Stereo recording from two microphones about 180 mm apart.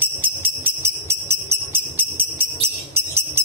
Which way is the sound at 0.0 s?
10° right (ahead or behind).